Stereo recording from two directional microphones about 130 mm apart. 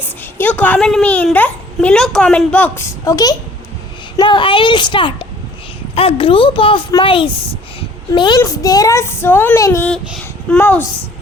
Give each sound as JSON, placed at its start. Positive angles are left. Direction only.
{"t": 0.0, "sound": "a sound", "side_deg": 15}
{"t": 0.9, "sound": "a child's voice", "side_deg": 5}
{"t": 4.2, "sound": "a child's voice", "side_deg": 40}
{"t": 8.4, "sound": "child singing", "side_deg": 30}
{"t": 10.5, "sound": "a child's voice", "side_deg": 15}